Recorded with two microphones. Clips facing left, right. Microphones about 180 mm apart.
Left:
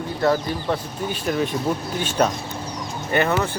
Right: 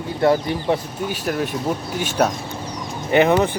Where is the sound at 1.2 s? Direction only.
5° right (ahead or behind).